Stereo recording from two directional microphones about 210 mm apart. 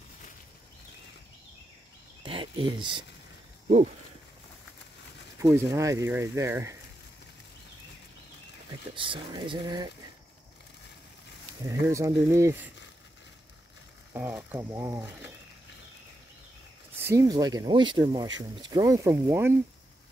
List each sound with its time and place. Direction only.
2.2 s a sound: 25° right (ahead or behind)
3.6 s a sound: 35° right (ahead or behind)
5.4 s speech: 15° right (ahead or behind)
8.9 s speech: 25° right (ahead or behind)
11.6 s speech: 15° right (ahead or behind)
14.1 s speech: 10° right (ahead or behind)
17.0 s speech: 15° right (ahead or behind)